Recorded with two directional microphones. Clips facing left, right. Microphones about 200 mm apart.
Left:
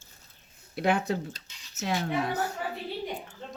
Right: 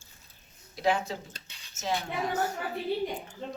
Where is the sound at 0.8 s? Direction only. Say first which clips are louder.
Left 2 dB; 60° left (ahead or behind).